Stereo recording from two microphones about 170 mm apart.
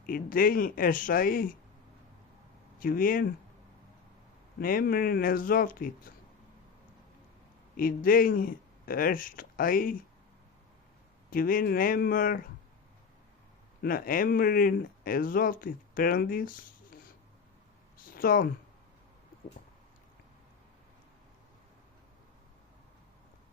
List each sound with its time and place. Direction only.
0.0 s speech: 55° left (ahead or behind)
2.7 s speech: 55° left (ahead or behind)
4.6 s speech: 55° left (ahead or behind)
7.8 s speech: 55° left (ahead or behind)
11.3 s speech: 55° left (ahead or behind)
13.8 s speech: 55° left (ahead or behind)
17.9 s a sound: 55° left (ahead or behind)